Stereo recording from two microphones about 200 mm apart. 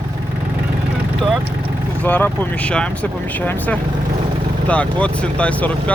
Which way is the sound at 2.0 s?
10° left (ahead or behind).